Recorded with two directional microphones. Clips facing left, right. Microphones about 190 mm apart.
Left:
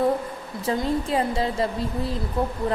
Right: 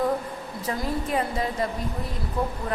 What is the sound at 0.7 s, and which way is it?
Speech, 25° left (ahead or behind).